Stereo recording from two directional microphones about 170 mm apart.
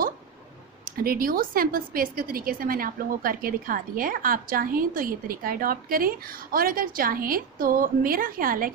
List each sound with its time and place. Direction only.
0.8 s a woman's voice: 60° right (ahead or behind)